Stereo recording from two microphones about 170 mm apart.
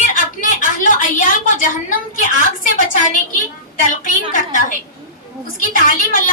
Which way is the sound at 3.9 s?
50° left (ahead or behind).